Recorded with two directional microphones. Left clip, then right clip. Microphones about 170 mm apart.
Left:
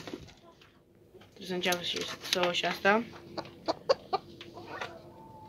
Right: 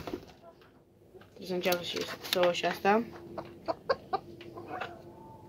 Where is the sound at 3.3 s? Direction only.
55° left (ahead or behind).